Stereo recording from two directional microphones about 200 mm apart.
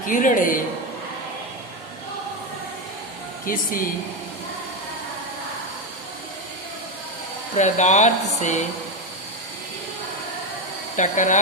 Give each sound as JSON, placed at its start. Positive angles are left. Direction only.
{"t": 0.0, "sound": "speech", "side_deg": 40}
{"t": 3.4, "sound": "speech", "side_deg": 45}
{"t": 7.5, "sound": "speech", "side_deg": 35}
{"t": 10.9, "sound": "speech", "side_deg": 40}